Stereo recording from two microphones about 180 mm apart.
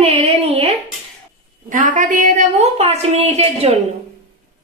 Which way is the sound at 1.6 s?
45° right (ahead or behind).